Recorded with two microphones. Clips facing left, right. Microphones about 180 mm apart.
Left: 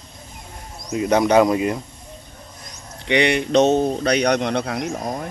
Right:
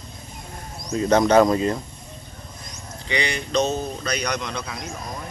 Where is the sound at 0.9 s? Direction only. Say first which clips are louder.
Left 1 dB; 15° left (ahead or behind).